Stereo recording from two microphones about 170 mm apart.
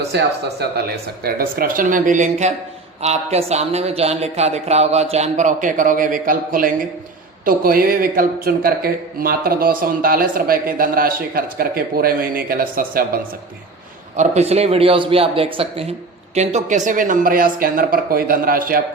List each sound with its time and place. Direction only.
0.1 s speech: 75° right (ahead or behind)
1.2 s a man's voice: 60° right (ahead or behind)
14.2 s a man's voice: 40° right (ahead or behind); by 18.8 s 55° right (ahead or behind)